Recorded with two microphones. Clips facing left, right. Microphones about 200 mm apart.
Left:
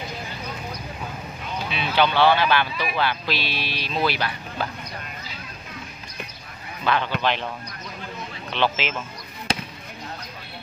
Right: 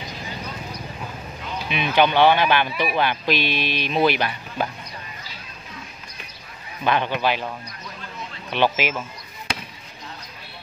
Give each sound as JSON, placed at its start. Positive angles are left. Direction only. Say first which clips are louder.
{"t": 1.7, "sound": "speech", "louder": "right 3 dB", "side_deg": -15}
{"t": 6.8, "sound": "speech", "louder": "right 2 dB", "side_deg": -15}
{"t": 8.5, "sound": "speech", "louder": "right 3 dB", "side_deg": -15}